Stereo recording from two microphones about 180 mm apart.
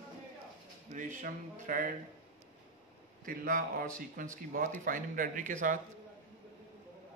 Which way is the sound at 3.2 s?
50° right (ahead or behind).